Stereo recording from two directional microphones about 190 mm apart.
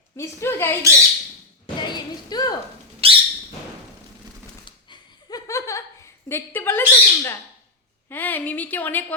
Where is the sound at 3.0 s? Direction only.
30° right (ahead or behind).